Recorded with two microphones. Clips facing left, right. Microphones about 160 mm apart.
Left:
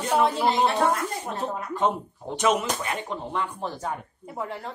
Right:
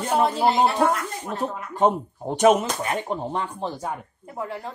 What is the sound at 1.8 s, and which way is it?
Speech, 45° right (ahead or behind).